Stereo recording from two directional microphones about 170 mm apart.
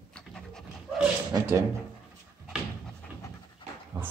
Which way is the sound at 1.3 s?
20° right (ahead or behind).